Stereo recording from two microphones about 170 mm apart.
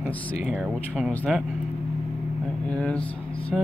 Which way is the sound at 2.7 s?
5° left (ahead or behind).